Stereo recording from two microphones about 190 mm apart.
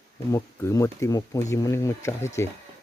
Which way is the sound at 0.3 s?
15° left (ahead or behind).